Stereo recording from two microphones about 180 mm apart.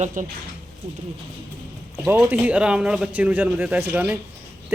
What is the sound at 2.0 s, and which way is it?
A man's voice, 10° right (ahead or behind).